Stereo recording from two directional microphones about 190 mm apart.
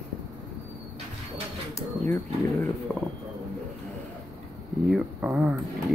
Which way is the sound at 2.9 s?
10° left (ahead or behind).